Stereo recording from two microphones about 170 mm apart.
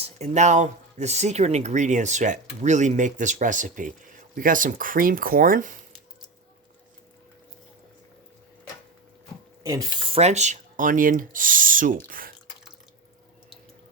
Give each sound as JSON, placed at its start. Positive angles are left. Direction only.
{"t": 0.0, "sound": "speech", "side_deg": -40}
{"t": 9.6, "sound": "speech", "side_deg": -20}
{"t": 10.1, "sound": "speech", "side_deg": -40}